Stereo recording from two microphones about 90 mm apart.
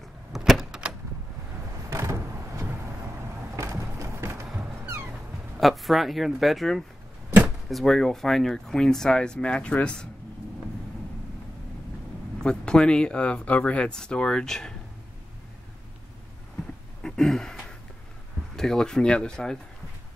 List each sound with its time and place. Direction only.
0.3 s vehicle: centre (ahead or behind)
1.9 s vehicle: 30° right (ahead or behind)
3.5 s a sound: 35° right (ahead or behind)
5.6 s speech: centre (ahead or behind)
12.4 s speech: 10° left (ahead or behind)
17.0 s a sound: 5° left (ahead or behind)
18.6 s speech: 5° left (ahead or behind)